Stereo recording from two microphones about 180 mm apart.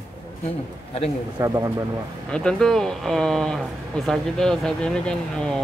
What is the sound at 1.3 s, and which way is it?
Speech, 15° right (ahead or behind).